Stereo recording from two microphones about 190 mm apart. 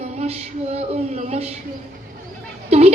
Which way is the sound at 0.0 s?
35° right (ahead or behind).